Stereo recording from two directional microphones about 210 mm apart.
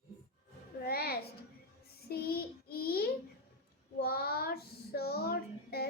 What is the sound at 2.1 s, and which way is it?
Child singing, 45° left (ahead or behind).